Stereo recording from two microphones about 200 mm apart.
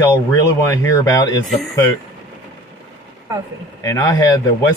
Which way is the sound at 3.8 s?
15° left (ahead or behind).